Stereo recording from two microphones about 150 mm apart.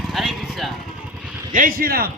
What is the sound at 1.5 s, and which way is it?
Speech, 70° right (ahead or behind).